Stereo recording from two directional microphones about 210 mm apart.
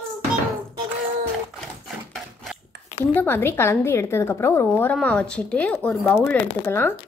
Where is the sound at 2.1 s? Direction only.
Centre (ahead or behind).